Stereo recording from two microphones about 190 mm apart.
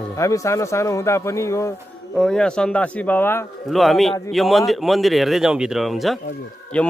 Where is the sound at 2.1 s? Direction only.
5° left (ahead or behind).